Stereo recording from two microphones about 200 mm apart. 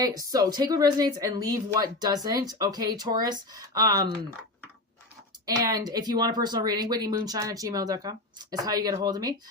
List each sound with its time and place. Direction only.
0.2 s speech: 15° right (ahead or behind)
5.5 s speech: 20° right (ahead or behind)